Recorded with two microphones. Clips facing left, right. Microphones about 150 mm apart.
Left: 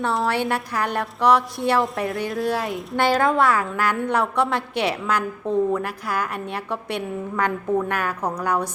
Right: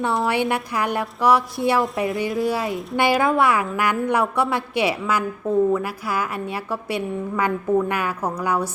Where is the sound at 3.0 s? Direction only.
10° right (ahead or behind).